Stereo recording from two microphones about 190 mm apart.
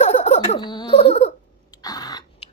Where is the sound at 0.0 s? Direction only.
35° left (ahead or behind).